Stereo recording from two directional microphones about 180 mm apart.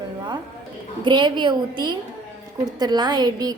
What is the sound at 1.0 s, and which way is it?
A woman's voice, 25° right (ahead or behind).